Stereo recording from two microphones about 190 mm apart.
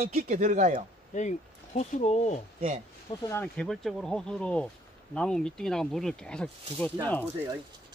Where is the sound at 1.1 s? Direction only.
40° left (ahead or behind).